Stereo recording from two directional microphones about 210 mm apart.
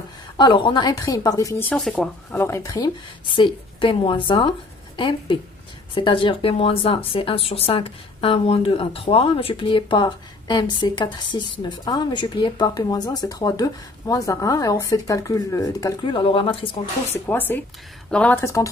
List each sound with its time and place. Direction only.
0.4 s speech: 20° left (ahead or behind)
17.3 s speech: 10° left (ahead or behind)